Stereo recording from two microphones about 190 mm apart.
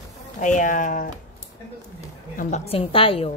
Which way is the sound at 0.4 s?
40° left (ahead or behind).